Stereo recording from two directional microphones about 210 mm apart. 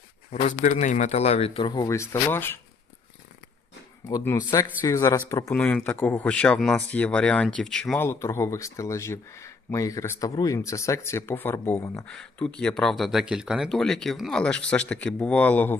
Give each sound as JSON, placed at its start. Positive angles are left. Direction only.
{"t": 0.3, "sound": "speech", "side_deg": 35}
{"t": 4.1, "sound": "speech", "side_deg": 15}